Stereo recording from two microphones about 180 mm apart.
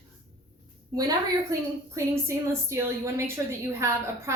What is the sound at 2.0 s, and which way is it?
A woman's voice, 15° right (ahead or behind).